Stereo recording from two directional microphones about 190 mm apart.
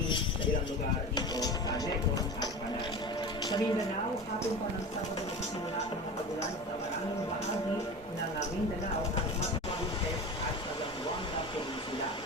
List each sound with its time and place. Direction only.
1.1 s music: 20° left (ahead or behind)